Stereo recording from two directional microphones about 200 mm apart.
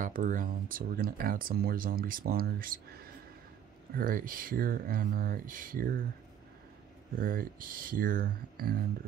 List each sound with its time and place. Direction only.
0.0 s speech: 40° right (ahead or behind)
7.2 s speech: 45° right (ahead or behind)